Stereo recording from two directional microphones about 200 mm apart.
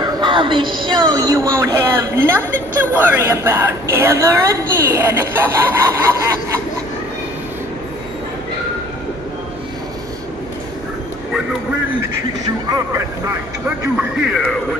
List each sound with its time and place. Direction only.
0.0 s a woman's voice: 25° right (ahead or behind)
12.6 s a woman's voice: 15° right (ahead or behind)